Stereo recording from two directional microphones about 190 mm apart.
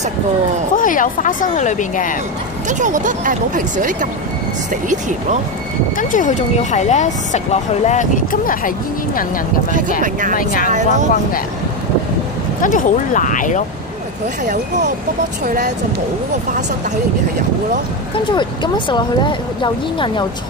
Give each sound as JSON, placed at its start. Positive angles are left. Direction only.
{"t": 0.7, "sound": "speech", "side_deg": 45}
{"t": 2.7, "sound": "speech", "side_deg": -40}
{"t": 5.9, "sound": "speech", "side_deg": 40}
{"t": 10.3, "sound": "speech", "side_deg": 45}
{"t": 10.7, "sound": "speech", "side_deg": -40}
{"t": 12.6, "sound": "speech", "side_deg": 45}
{"t": 14.4, "sound": "speech", "side_deg": -40}
{"t": 18.3, "sound": "speech", "side_deg": 25}